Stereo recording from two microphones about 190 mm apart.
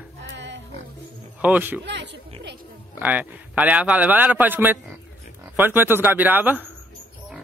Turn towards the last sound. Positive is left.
turn(degrees=-10)  # may be behind; listen again after turning